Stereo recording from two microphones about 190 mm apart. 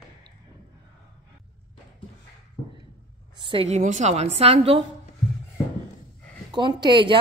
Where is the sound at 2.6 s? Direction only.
15° left (ahead or behind).